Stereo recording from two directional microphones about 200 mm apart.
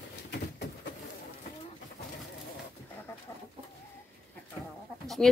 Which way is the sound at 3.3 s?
10° left (ahead or behind).